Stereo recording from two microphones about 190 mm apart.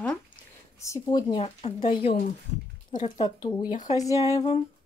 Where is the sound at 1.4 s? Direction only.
30° left (ahead or behind).